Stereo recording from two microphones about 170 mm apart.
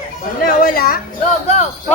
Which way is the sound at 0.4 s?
60° left (ahead or behind).